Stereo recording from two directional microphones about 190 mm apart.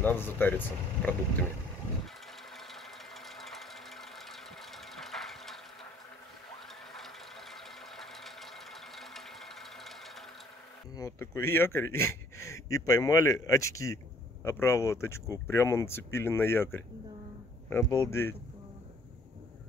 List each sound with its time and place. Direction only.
0.0 s speech: 10° left (ahead or behind)
3.3 s sewing machine: centre (ahead or behind)
6.9 s a sound: centre (ahead or behind)
11.0 s speech: 15° left (ahead or behind)